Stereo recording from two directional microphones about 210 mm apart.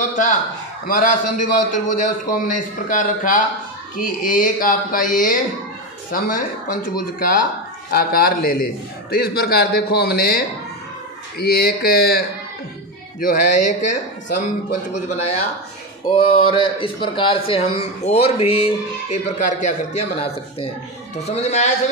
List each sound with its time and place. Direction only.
0.1 s a man's voice: 35° left (ahead or behind)
13.2 s speech: 40° left (ahead or behind)